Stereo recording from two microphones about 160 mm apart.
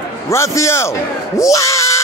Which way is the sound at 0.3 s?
15° left (ahead or behind).